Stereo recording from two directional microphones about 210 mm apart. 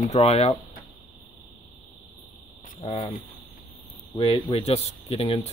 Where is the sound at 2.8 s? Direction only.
20° left (ahead or behind).